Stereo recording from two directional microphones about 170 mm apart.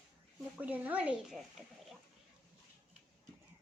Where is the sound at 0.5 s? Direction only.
10° right (ahead or behind).